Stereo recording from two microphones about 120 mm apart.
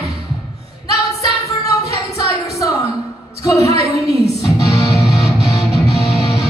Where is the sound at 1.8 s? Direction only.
25° left (ahead or behind).